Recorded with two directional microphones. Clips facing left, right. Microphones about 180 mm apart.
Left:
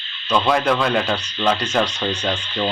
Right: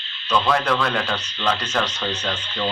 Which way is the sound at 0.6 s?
20° left (ahead or behind).